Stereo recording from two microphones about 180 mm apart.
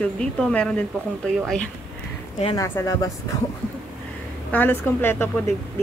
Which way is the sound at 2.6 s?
20° left (ahead or behind).